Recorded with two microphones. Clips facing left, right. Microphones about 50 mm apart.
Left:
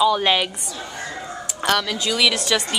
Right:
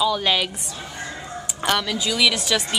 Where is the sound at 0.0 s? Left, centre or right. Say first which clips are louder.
Left 3 dB; centre.